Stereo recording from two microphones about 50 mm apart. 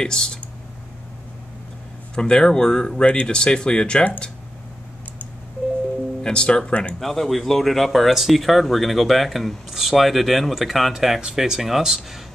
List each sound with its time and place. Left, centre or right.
0.0 s speech: centre
2.1 s speech: centre
6.2 s speech: centre
7.0 s speech: centre